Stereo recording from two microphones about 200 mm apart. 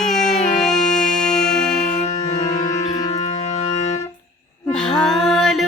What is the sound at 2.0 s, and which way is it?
Music, 35° left (ahead or behind).